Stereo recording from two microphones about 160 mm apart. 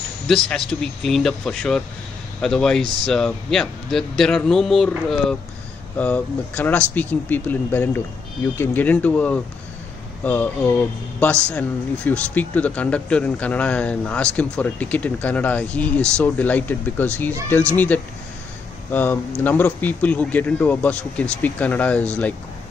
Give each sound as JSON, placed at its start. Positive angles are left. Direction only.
{"t": 0.3, "sound": "speech", "side_deg": 5}
{"t": 11.5, "sound": "speech", "side_deg": 10}